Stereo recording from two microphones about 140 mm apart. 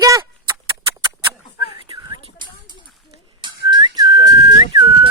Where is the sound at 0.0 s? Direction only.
30° right (ahead or behind).